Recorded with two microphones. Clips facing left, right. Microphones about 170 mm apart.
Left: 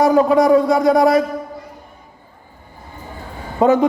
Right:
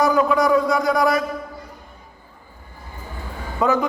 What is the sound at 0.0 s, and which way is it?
A man's voice, 30° left (ahead or behind).